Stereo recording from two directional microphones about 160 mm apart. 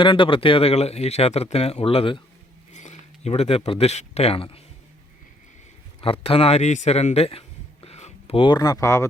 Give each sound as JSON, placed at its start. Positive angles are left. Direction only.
{"t": 0.0, "sound": "speech", "side_deg": 30}
{"t": 2.7, "sound": "speech", "side_deg": 45}
{"t": 6.0, "sound": "a man's voice", "side_deg": 35}